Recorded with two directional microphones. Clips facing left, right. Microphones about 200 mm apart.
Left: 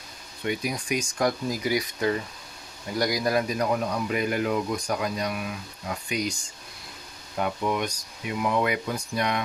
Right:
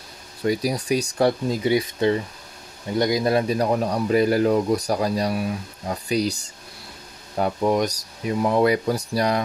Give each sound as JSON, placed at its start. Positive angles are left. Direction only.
{"t": 0.4, "sound": "speech", "side_deg": -35}
{"t": 7.3, "sound": "speech", "side_deg": -35}